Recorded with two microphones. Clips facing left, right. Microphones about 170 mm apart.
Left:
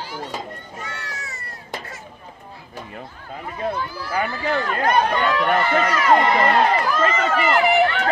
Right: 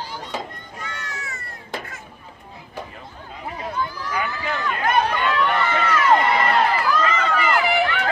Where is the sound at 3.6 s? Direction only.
35° left (ahead or behind).